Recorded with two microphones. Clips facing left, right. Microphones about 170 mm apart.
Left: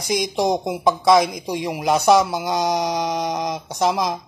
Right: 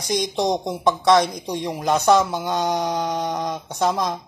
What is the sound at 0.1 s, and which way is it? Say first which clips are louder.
Speech: left 1 dB; 5° left (ahead or behind).